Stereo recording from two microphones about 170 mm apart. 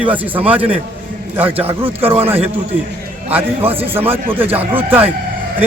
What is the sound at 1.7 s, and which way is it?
Speech, 35° right (ahead or behind).